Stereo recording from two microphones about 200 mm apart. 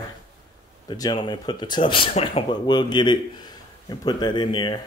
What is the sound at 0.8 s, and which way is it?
Speech, 20° left (ahead or behind).